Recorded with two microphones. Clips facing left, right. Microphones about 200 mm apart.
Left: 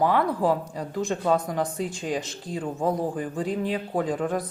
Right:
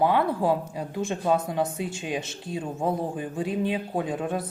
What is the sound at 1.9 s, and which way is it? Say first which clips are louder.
Speech: left 2 dB; 25° right (ahead or behind).